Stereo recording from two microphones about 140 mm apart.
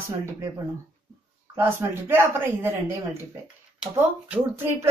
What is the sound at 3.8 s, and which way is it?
Speech, 10° right (ahead or behind).